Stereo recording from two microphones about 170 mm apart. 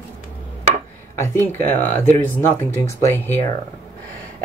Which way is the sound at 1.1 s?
15° left (ahead or behind).